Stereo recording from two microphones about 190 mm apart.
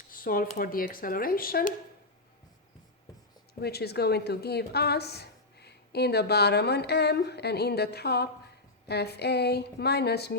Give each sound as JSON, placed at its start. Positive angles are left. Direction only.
{"t": 0.1, "sound": "speech", "side_deg": 50}
{"t": 3.6, "sound": "a woman's voice", "side_deg": 60}